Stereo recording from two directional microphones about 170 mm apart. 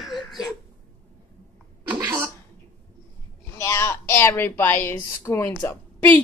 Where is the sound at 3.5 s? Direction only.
15° left (ahead or behind).